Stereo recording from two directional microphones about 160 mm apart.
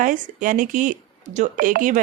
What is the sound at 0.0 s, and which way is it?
Speech, 55° right (ahead or behind).